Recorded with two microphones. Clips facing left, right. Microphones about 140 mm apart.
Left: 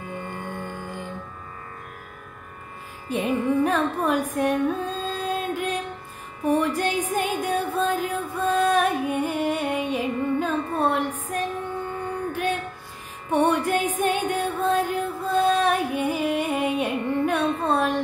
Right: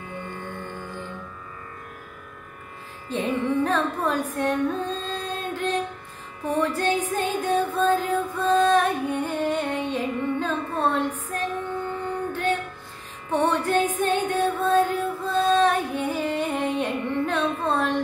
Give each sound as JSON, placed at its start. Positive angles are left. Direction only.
{"t": 0.3, "sound": "music", "side_deg": 45}
{"t": 3.1, "sound": "music", "side_deg": 10}
{"t": 12.3, "sound": "female singing", "side_deg": 10}
{"t": 13.3, "sound": "music", "side_deg": 10}